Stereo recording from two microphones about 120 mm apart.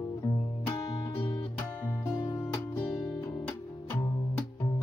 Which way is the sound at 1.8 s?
15° left (ahead or behind).